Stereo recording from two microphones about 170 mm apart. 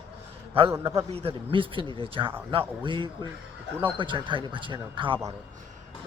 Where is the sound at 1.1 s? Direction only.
35° right (ahead or behind).